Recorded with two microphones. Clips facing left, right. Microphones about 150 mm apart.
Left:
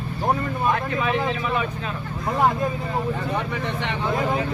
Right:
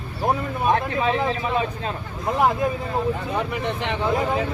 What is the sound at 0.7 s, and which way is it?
Speech, 30° right (ahead or behind).